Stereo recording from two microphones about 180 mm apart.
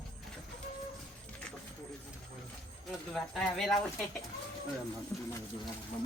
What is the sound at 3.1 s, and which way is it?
Speech, centre (ahead or behind).